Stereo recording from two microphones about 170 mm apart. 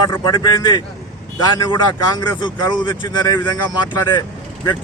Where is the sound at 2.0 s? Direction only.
25° left (ahead or behind).